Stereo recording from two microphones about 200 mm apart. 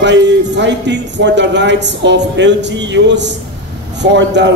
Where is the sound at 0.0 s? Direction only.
60° right (ahead or behind).